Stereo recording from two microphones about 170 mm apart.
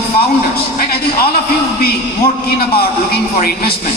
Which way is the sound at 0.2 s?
65° left (ahead or behind).